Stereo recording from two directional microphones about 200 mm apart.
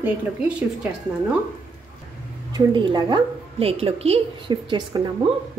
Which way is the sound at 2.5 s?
20° right (ahead or behind).